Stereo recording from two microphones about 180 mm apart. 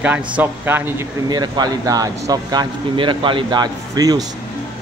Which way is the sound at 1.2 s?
25° right (ahead or behind).